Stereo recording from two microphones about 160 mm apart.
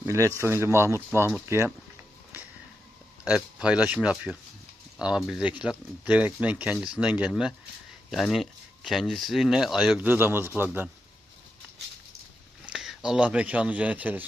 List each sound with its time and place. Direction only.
0.0 s speech: 15° right (ahead or behind)
3.2 s speech: 5° right (ahead or behind)
12.6 s speech: 5° right (ahead or behind)